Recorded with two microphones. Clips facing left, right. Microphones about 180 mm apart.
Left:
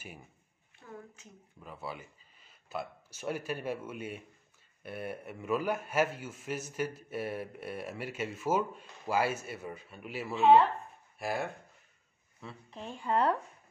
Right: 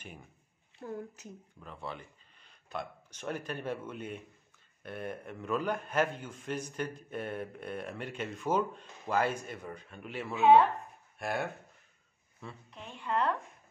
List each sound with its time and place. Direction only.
0.8 s a woman's voice: 40° right (ahead or behind)
1.6 s a man's voice: 5° left (ahead or behind)
12.7 s speech: 35° left (ahead or behind)